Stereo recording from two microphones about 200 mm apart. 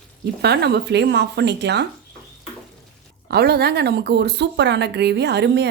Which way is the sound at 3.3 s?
55° right (ahead or behind).